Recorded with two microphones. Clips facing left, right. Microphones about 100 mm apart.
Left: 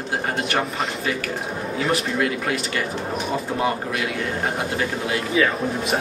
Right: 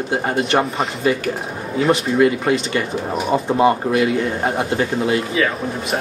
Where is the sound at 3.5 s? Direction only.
30° right (ahead or behind).